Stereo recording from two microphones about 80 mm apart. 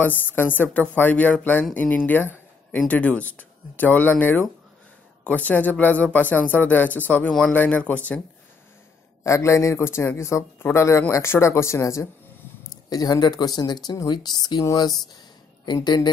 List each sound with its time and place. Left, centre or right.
0.0 s speech: left
2.0 s a sound: left
2.9 s speech: centre
9.2 s a man's voice: left
12.9 s speech: left
15.6 s speech: left